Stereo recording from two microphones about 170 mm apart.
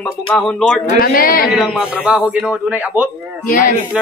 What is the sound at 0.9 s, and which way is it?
Speech, 60° left (ahead or behind).